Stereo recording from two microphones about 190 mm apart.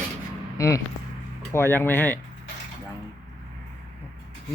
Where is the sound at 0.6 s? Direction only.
15° left (ahead or behind).